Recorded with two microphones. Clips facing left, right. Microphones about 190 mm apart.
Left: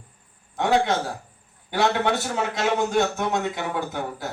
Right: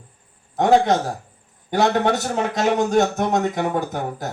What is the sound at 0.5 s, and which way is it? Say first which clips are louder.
A man's voice: right 5 dB; 45° right (ahead or behind).